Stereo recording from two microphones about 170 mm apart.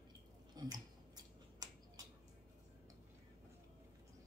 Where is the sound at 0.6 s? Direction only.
25° right (ahead or behind).